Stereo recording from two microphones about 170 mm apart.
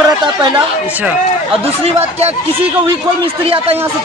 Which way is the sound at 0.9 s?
10° right (ahead or behind).